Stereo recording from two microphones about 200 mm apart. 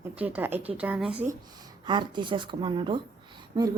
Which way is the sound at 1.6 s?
20° right (ahead or behind).